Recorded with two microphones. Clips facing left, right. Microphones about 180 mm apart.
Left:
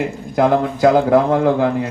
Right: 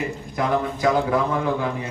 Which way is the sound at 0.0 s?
65° left (ahead or behind).